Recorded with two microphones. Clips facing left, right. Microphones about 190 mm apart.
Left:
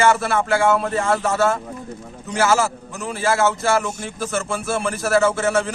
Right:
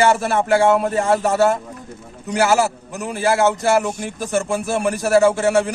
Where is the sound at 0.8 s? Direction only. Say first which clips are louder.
Right 3 dB; 15° right (ahead or behind).